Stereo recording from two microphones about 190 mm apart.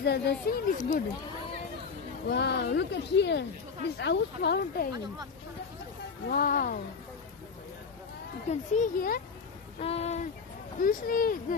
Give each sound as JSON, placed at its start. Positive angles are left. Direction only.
{"t": 0.0, "sound": "speech", "side_deg": 60}
{"t": 2.2, "sound": "speech", "side_deg": 60}
{"t": 6.2, "sound": "a child's voice", "side_deg": 50}
{"t": 8.5, "sound": "a child's voice", "side_deg": 45}
{"t": 9.8, "sound": "speech", "side_deg": 35}
{"t": 10.8, "sound": "a child's voice", "side_deg": 45}